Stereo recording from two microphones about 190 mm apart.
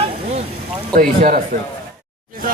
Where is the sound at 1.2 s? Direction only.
50° right (ahead or behind).